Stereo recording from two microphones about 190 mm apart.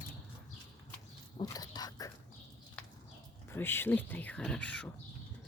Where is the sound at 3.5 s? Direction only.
10° left (ahead or behind).